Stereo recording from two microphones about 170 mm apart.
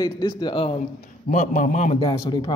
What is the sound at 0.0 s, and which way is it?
Speech, 25° left (ahead or behind).